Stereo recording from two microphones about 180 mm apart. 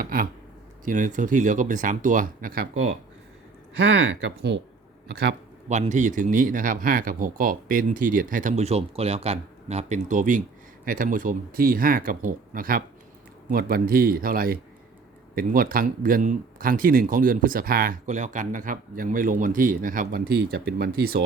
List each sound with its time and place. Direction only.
0.0 s speech: 55° right (ahead or behind)
3.8 s speech: 70° right (ahead or behind)
5.0 s speech: 65° right (ahead or behind)
5.6 s speech: 40° right (ahead or behind); by 21.2 s 55° right (ahead or behind)